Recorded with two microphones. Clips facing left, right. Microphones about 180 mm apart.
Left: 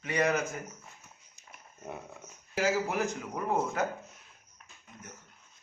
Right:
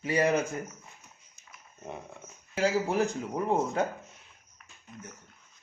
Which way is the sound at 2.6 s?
30° right (ahead or behind).